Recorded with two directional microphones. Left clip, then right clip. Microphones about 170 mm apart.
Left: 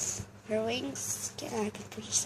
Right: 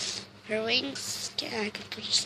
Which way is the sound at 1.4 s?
15° left (ahead or behind).